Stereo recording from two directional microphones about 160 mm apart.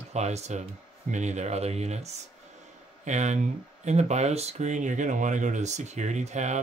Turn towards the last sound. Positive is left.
turn(degrees=-45)  # may be behind; listen again after turning